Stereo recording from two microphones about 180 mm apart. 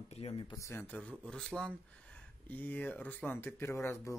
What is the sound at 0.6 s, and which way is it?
Speech, 10° left (ahead or behind).